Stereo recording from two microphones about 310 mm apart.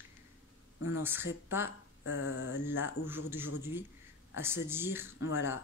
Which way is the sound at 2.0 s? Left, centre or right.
Left.